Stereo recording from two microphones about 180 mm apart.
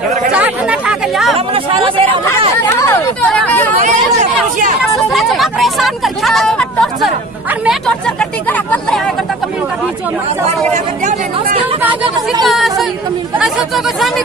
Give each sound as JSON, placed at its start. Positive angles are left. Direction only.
{"t": 0.3, "sound": "chatter", "side_deg": -5}
{"t": 1.3, "sound": "speech", "side_deg": -30}
{"t": 2.6, "sound": "speech", "side_deg": 10}
{"t": 3.8, "sound": "speech", "side_deg": -45}
{"t": 4.8, "sound": "speech", "side_deg": 0}
{"t": 10.7, "sound": "speech", "side_deg": -45}
{"t": 12.4, "sound": "speech", "side_deg": 0}